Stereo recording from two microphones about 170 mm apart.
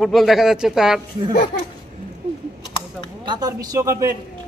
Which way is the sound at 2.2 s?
35° right (ahead or behind).